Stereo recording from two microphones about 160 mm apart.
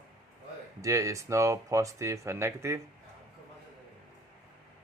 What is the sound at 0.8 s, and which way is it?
Speech, 20° right (ahead or behind).